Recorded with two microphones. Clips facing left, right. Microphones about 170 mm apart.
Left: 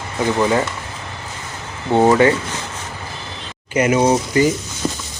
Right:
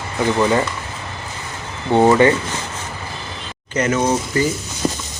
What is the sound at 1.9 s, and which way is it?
Speech, 5° left (ahead or behind).